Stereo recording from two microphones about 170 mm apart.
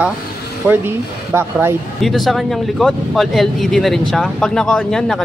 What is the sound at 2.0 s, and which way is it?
Speech, centre (ahead or behind).